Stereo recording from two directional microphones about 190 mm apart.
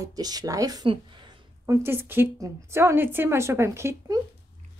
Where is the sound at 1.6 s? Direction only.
10° right (ahead or behind).